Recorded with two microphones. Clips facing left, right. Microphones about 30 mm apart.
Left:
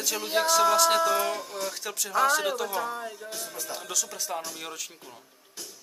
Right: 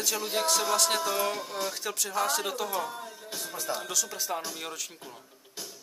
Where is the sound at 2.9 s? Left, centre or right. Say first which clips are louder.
Left 5 dB; centre.